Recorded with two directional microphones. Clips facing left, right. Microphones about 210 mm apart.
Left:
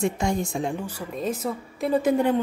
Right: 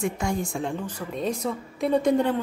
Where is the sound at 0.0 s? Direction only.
25° left (ahead or behind).